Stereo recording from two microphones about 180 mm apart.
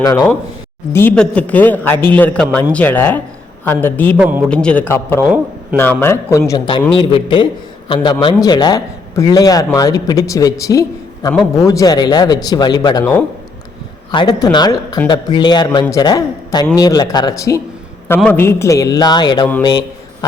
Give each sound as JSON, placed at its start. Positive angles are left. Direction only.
{"t": 0.0, "sound": "a man's voice", "side_deg": 20}
{"t": 0.9, "sound": "a man's voice", "side_deg": 10}
{"t": 4.2, "sound": "a man's voice", "side_deg": -10}
{"t": 4.4, "sound": "a man's voice", "side_deg": 5}
{"t": 6.9, "sound": "a man's voice", "side_deg": 30}
{"t": 18.2, "sound": "a man's voice", "side_deg": 10}